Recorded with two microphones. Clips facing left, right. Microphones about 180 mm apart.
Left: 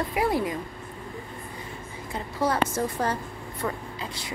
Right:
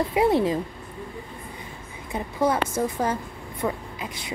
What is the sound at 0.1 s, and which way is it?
Speech, 25° right (ahead or behind).